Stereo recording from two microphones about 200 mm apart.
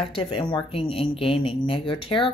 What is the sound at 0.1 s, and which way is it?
A woman's voice, 25° left (ahead or behind).